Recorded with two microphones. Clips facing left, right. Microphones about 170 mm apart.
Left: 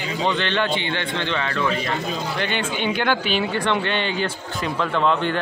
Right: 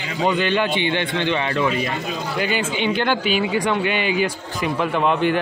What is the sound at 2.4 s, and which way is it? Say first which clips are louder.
Speech: right 4 dB; 5° right (ahead or behind).